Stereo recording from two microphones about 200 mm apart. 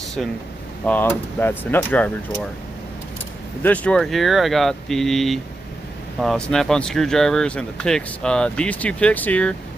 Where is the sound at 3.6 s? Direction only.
5° left (ahead or behind).